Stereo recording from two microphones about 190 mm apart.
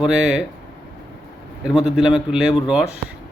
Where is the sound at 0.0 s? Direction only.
5° right (ahead or behind).